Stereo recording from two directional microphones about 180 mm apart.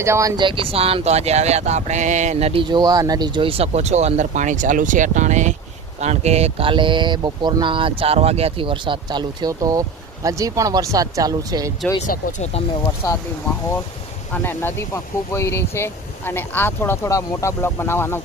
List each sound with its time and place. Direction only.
0.0 s speech: 15° right (ahead or behind)
12.0 s speech: 45° left (ahead or behind)
13.0 s speech: 20° left (ahead or behind)
14.3 s speech: 10° left (ahead or behind)